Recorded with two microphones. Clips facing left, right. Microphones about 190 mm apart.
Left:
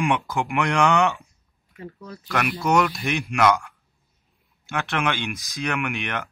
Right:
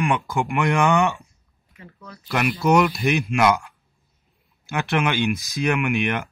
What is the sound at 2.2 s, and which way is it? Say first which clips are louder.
Speech: right 3 dB; 10° right (ahead or behind).